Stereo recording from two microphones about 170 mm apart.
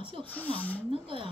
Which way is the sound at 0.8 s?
30° right (ahead or behind).